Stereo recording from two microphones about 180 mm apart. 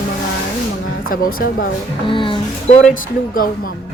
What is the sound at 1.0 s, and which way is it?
Speech, 50° left (ahead or behind).